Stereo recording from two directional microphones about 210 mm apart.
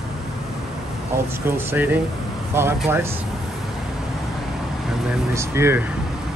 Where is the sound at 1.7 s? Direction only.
10° right (ahead or behind).